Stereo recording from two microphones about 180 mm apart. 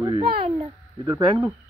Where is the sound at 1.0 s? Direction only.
15° right (ahead or behind).